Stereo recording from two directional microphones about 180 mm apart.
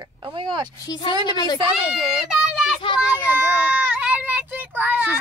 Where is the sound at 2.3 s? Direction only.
Centre (ahead or behind).